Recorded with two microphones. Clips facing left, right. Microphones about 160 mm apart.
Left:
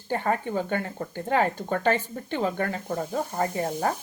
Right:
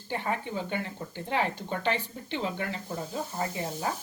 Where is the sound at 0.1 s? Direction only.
45° left (ahead or behind).